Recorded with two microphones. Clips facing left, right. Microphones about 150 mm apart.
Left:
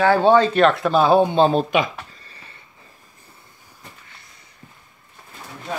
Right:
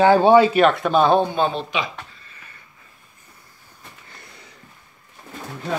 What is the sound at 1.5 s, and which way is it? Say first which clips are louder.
Speech: left 7 dB; 45° left (ahead or behind).